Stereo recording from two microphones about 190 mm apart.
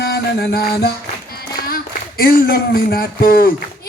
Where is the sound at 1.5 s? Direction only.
50° left (ahead or behind).